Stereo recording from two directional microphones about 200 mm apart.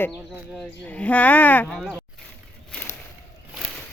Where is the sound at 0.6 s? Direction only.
5° left (ahead or behind).